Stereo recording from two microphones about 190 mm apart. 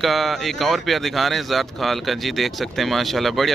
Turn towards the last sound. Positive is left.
turn(degrees=0)  # may be behind; listen again after turning